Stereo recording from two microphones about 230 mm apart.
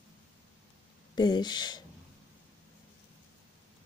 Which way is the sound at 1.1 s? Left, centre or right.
Centre.